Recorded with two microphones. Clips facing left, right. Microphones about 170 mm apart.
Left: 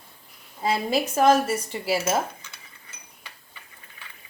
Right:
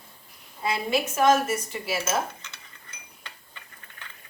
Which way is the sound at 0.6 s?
35° left (ahead or behind).